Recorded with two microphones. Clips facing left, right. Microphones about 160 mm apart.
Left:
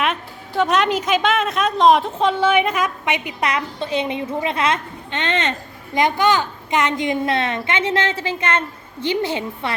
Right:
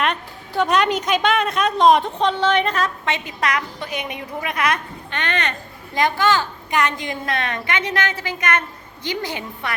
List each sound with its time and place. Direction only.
0.0 s a woman's voice: centre (ahead or behind); by 9.7 s 25° left (ahead or behind)